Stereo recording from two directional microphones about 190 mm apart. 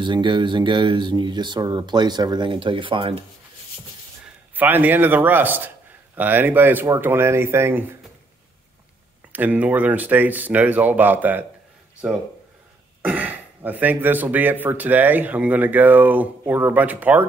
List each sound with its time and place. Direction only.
0.0 s speech: 25° right (ahead or behind)
4.6 s speech: 10° right (ahead or behind)
9.3 s speech: 10° right (ahead or behind)